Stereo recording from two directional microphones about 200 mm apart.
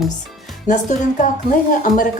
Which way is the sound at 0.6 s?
40° left (ahead or behind).